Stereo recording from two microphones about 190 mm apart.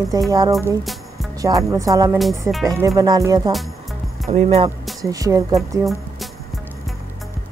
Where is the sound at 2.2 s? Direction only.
Centre (ahead or behind).